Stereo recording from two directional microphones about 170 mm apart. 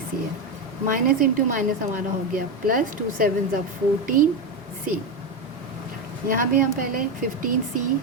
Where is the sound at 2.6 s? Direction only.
55° right (ahead or behind).